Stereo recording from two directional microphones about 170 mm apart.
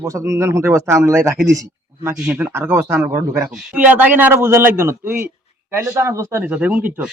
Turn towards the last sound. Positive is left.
turn(degrees=-10)  # may be behind; listen again after turning